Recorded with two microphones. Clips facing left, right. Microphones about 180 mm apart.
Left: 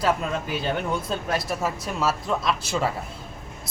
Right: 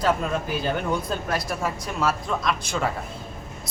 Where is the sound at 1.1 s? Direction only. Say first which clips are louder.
Left 1 dB; centre (ahead or behind).